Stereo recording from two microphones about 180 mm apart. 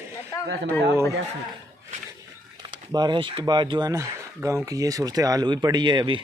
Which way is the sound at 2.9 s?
25° right (ahead or behind).